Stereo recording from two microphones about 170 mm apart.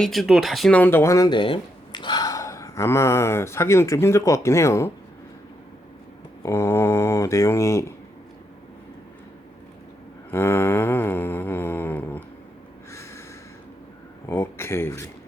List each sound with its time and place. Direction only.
0.0 s speech: centre (ahead or behind); by 4.9 s 15° left (ahead or behind)
6.4 s speech: 15° left (ahead or behind)
10.3 s a sound: 15° left (ahead or behind)
12.9 s snort: 15° left (ahead or behind)
14.3 s speech: 15° left (ahead or behind)